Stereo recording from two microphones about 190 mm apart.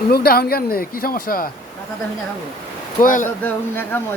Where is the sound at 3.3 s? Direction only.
10° left (ahead or behind).